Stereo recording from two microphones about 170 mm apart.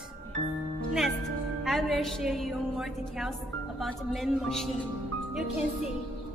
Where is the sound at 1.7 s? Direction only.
Centre (ahead or behind).